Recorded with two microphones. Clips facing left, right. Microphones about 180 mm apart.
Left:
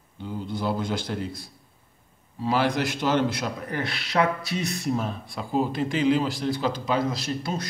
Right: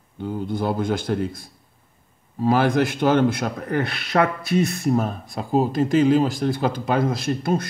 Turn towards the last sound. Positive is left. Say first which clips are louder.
# right 7 dB
turn(degrees=-55)  # may be behind; listen again after turning